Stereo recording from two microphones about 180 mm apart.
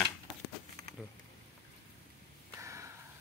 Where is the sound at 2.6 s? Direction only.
15° right (ahead or behind).